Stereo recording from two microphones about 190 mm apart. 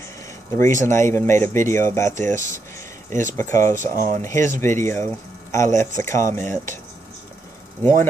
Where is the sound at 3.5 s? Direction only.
45° right (ahead or behind).